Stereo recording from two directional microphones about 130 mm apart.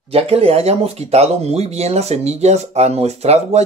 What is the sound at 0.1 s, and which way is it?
Speech, 50° right (ahead or behind).